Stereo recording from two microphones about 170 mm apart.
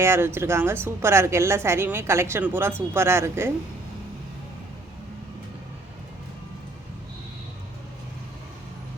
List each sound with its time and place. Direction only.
0.0 s a woman's voice: 15° right (ahead or behind)